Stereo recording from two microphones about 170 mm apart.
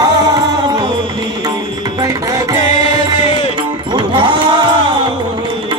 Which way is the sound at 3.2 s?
30° left (ahead or behind).